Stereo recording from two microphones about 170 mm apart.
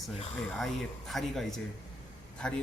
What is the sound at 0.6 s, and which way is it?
Speech, centre (ahead or behind).